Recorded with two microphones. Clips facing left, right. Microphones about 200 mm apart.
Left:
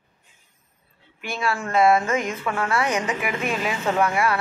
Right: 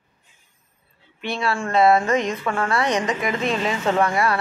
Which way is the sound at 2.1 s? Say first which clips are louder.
Right 3 dB; 35° right (ahead or behind).